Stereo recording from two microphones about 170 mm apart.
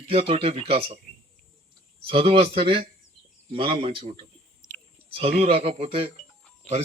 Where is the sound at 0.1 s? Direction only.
35° right (ahead or behind).